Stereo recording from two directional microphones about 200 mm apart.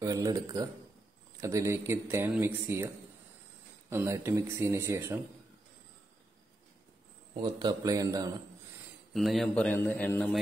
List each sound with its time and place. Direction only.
0.0 s speech: 15° right (ahead or behind)
3.9 s speech: 15° right (ahead or behind)
7.4 s speech: 20° right (ahead or behind)
9.1 s a man's voice: centre (ahead or behind)